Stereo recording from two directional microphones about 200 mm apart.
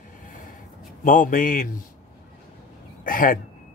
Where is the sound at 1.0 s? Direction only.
40° left (ahead or behind).